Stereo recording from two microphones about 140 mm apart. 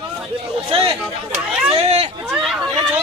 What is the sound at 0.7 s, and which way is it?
Speech, 40° right (ahead or behind).